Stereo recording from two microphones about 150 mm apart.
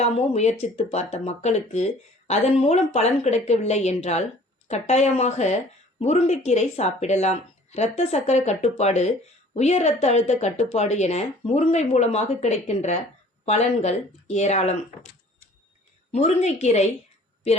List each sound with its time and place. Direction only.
0.0 s speech: 45° left (ahead or behind)
16.1 s speech: 50° left (ahead or behind)